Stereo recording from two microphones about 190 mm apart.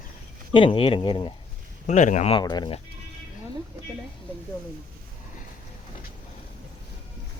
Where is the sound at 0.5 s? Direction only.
25° left (ahead or behind).